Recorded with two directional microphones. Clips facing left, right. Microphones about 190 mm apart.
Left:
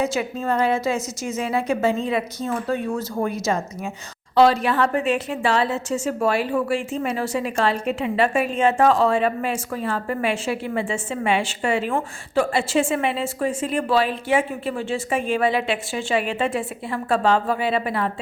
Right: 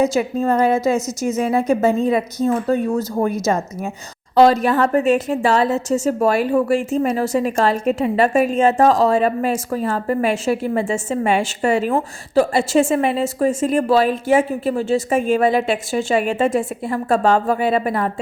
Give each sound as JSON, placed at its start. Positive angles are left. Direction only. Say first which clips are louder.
{"t": 0.0, "sound": "a woman's voice", "louder": "right 6 dB", "side_deg": -40}